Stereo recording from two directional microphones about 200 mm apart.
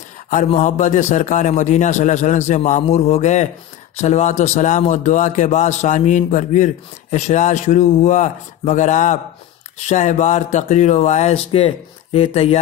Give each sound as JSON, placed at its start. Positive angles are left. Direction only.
{"t": 0.3, "sound": "a man's voice", "side_deg": 35}